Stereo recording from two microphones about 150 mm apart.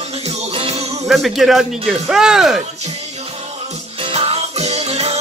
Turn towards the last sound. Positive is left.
turn(degrees=-45)  # may be behind; listen again after turning